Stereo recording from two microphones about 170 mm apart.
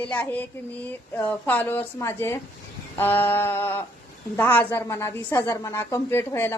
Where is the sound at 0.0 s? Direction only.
10° left (ahead or behind).